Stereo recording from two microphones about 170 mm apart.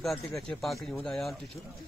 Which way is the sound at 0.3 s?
Centre (ahead or behind).